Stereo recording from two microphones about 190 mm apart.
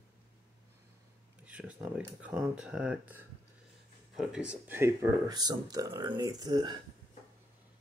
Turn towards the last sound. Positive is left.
turn(degrees=-25)  # may be behind; listen again after turning